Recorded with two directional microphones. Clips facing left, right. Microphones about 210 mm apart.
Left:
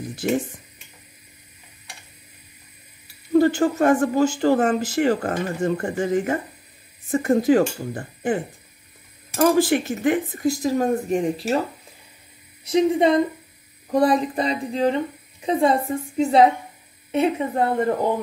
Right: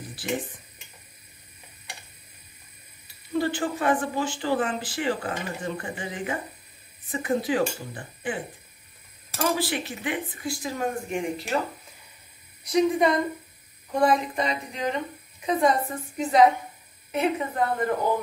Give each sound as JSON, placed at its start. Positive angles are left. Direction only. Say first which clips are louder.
{"t": 0.2, "sound": "speech", "louder": "left 8 dB", "side_deg": 45}
{"t": 3.3, "sound": "speech", "louder": "left 9 dB", "side_deg": 45}
{"t": 9.4, "sound": "speech", "louder": "left 9 dB", "side_deg": 45}
{"t": 12.6, "sound": "a woman's voice", "louder": "left 4 dB", "side_deg": 25}